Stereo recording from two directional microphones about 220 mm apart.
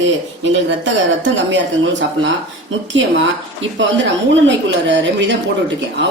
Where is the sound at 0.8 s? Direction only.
55° right (ahead or behind).